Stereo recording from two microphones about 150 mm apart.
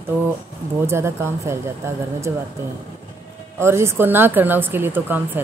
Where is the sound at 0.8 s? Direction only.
15° right (ahead or behind).